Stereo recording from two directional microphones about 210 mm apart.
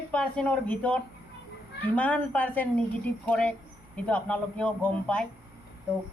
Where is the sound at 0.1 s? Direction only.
5° left (ahead or behind).